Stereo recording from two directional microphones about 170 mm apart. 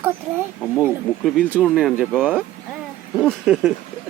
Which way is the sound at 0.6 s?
5° left (ahead or behind).